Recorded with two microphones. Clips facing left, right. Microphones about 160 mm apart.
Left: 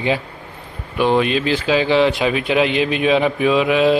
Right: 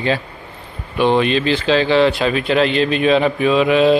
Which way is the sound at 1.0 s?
5° left (ahead or behind).